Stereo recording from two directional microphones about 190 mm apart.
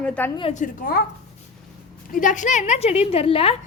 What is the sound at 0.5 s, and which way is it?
Speech, 45° left (ahead or behind).